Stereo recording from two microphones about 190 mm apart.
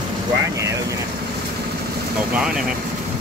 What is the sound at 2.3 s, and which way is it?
Speech, 5° right (ahead or behind).